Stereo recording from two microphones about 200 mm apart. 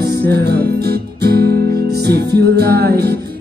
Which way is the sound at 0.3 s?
55° right (ahead or behind).